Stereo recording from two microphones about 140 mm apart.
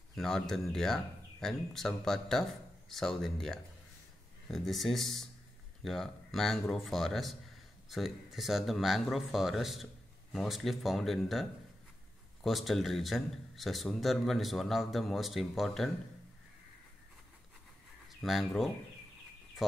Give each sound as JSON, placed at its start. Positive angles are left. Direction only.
{"t": 0.1, "sound": "a man's voice", "side_deg": 5}
{"t": 12.4, "sound": "a man's voice", "side_deg": 0}
{"t": 18.2, "sound": "a man's voice", "side_deg": 0}